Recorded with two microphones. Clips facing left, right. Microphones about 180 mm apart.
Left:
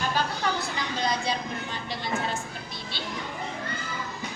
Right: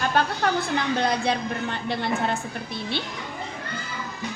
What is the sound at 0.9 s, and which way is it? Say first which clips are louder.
A man's voice: right 1 dB; 60° right (ahead or behind).